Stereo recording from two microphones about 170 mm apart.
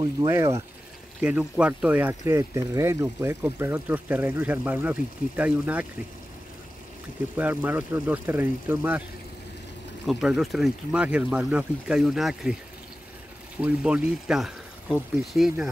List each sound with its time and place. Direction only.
0.0 s speech: 20° right (ahead or behind)
7.3 s speech: 10° right (ahead or behind)
10.0 s speech: centre (ahead or behind)
13.6 s speech: 5° right (ahead or behind)